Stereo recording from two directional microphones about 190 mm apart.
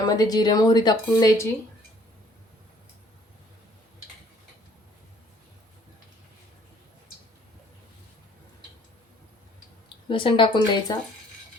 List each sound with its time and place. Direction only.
0.0 s speech: 20° left (ahead or behind)
10.1 s speech: 25° left (ahead or behind)